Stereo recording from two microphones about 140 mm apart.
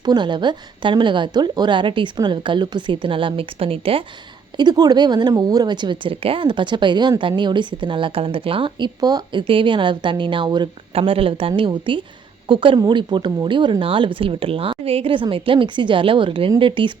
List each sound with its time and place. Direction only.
0.0 s a woman's voice: 30° right (ahead or behind)
4.5 s a woman's voice: 30° right (ahead or behind)